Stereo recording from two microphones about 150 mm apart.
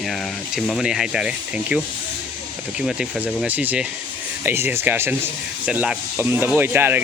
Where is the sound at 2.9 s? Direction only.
5° right (ahead or behind).